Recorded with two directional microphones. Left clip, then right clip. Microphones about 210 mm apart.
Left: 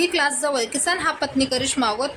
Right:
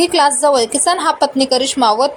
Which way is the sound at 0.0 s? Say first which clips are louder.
Right 9 dB; 20° right (ahead or behind).